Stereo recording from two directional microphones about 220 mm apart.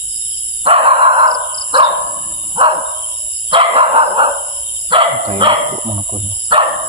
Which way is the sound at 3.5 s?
25° right (ahead or behind).